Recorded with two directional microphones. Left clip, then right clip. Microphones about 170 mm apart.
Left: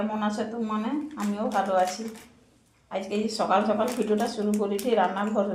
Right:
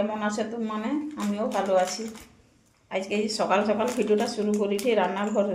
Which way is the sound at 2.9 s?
35° right (ahead or behind).